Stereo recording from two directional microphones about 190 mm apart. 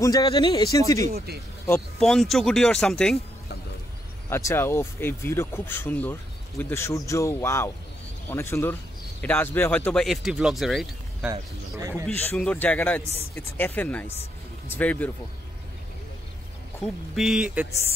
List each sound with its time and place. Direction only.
0.0 s speech: 20° left (ahead or behind)
1.1 s speech: 55° right (ahead or behind)
2.0 s speech: centre (ahead or behind)
4.3 s speech: 15° left (ahead or behind); by 11.2 s centre (ahead or behind)
12.1 s speech: 10° left (ahead or behind)
16.8 s speech: centre (ahead or behind)